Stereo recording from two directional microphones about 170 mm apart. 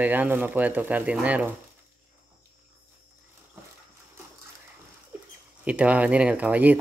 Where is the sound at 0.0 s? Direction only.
10° right (ahead or behind).